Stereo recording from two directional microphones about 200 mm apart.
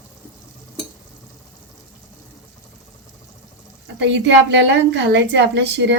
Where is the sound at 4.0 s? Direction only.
65° right (ahead or behind).